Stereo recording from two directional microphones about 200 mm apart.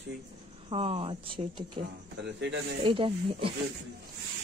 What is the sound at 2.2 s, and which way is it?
Speech, 60° right (ahead or behind).